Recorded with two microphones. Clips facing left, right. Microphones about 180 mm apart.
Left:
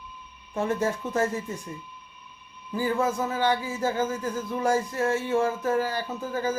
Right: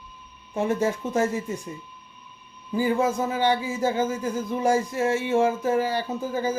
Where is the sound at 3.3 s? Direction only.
20° right (ahead or behind).